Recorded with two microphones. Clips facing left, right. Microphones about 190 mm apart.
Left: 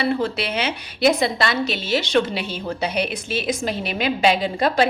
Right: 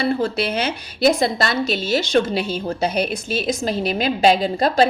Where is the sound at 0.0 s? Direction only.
45° right (ahead or behind).